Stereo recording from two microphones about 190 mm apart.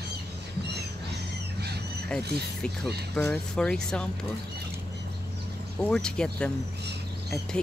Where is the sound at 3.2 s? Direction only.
5° left (ahead or behind).